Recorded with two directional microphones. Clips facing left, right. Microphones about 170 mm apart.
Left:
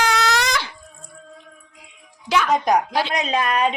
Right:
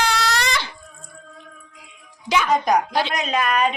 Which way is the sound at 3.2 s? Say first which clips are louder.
Even; 25° left (ahead or behind).